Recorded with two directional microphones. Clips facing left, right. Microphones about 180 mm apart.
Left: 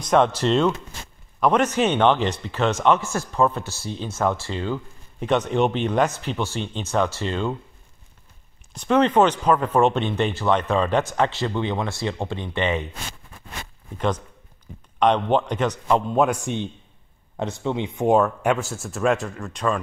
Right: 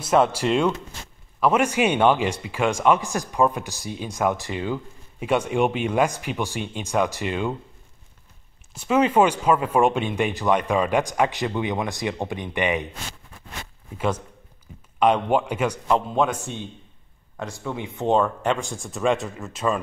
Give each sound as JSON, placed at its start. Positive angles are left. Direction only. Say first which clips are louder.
{"t": 0.0, "sound": "a man's voice", "louder": "left 1 dB", "side_deg": -5}
{"t": 8.7, "sound": "a man's voice", "louder": "left 1 dB", "side_deg": -5}
{"t": 13.9, "sound": "a man's voice", "louder": "left 1 dB", "side_deg": -10}
{"t": 16.2, "sound": "a man's voice", "louder": "left 3 dB", "side_deg": 10}
{"t": 17.4, "sound": "speech", "louder": "left 5 dB", "side_deg": 20}